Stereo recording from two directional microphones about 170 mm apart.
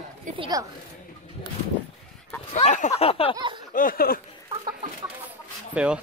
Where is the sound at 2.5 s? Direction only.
45° left (ahead or behind).